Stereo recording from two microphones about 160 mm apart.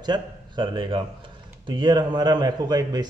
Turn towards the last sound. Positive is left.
turn(degrees=-25)  # may be behind; listen again after turning